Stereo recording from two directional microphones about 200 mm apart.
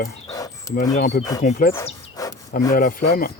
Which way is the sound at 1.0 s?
45° left (ahead or behind).